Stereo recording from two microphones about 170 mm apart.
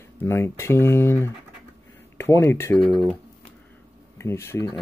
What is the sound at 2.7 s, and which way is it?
Speech, 5° left (ahead or behind).